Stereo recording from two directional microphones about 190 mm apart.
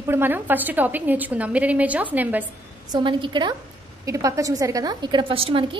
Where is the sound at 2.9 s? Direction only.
25° right (ahead or behind).